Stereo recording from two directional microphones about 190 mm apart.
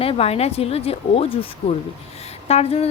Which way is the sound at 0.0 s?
30° left (ahead or behind).